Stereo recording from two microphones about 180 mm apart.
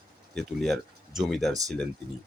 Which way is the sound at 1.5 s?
20° right (ahead or behind).